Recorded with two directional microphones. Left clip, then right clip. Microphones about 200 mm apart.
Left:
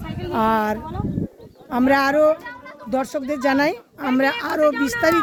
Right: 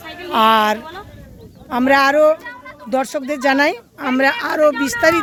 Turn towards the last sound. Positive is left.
turn(degrees=10)  # may be behind; listen again after turning